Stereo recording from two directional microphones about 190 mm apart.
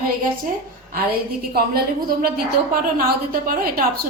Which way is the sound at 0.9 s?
50° right (ahead or behind).